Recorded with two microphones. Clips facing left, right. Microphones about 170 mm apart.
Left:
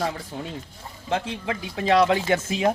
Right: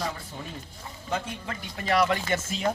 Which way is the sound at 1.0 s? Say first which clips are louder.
Left 6 dB; 90° left.